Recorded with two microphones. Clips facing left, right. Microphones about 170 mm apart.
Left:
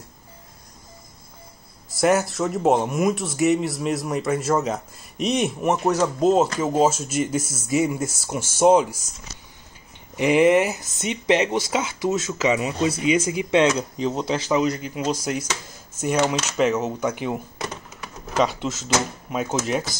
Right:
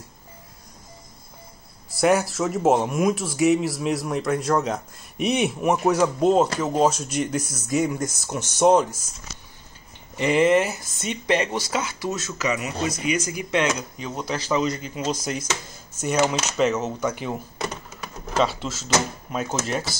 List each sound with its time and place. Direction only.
1.9 s speech: centre (ahead or behind)
10.1 s speech: 15° left (ahead or behind)
14.5 s speech: 10° left (ahead or behind)
16.5 s speech: 10° left (ahead or behind)